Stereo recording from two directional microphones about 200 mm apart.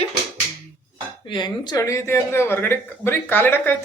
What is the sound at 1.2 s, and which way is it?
Speech, 25° left (ahead or behind).